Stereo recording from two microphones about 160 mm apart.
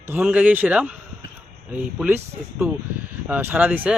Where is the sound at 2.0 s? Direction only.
10° right (ahead or behind).